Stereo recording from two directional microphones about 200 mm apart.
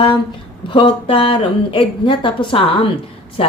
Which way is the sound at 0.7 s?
25° left (ahead or behind).